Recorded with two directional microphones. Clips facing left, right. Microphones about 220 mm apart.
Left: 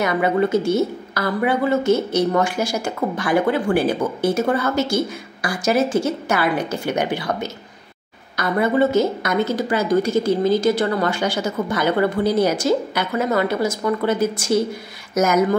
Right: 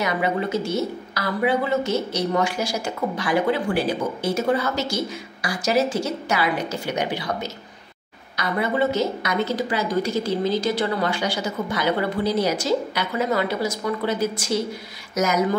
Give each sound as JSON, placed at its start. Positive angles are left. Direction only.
{"t": 0.0, "sound": "a woman's voice", "side_deg": 50}
{"t": 8.4, "sound": "a woman's voice", "side_deg": 50}